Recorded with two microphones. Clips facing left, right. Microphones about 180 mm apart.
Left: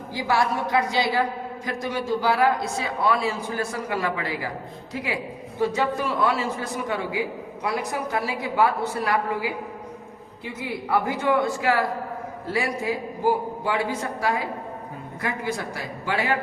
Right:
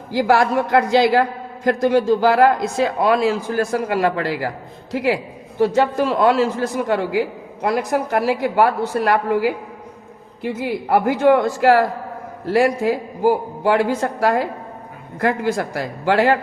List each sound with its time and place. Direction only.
0.1 s a woman's voice: 90° right; by 9.5 s 70° right (ahead or behind)
10.4 s speech: 85° right